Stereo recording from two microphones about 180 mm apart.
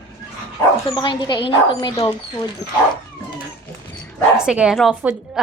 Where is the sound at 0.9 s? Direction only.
25° left (ahead or behind).